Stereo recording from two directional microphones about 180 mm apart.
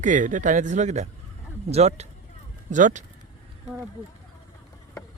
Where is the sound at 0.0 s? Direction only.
45° right (ahead or behind).